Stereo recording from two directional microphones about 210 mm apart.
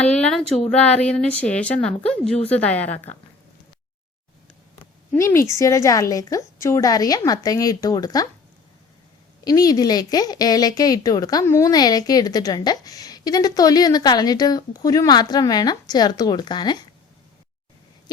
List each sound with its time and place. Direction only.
0.0 s a woman's voice: 5° left (ahead or behind)
5.1 s a woman's voice: 15° left (ahead or behind)
9.4 s speech: 20° left (ahead or behind)